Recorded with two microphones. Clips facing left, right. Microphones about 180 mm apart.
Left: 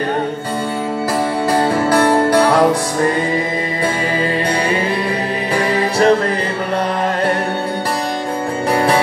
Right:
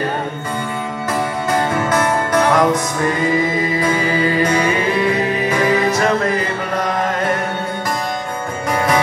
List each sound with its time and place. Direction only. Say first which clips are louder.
1.5 s music: left 3 dB; 35° left (ahead or behind)